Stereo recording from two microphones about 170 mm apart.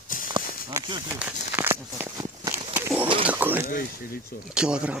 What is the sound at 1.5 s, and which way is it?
Walk, 15° right (ahead or behind).